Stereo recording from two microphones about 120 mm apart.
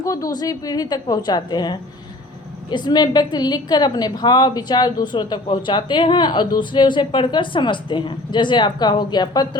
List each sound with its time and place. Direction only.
0.0 s a woman's voice: 30° left (ahead or behind)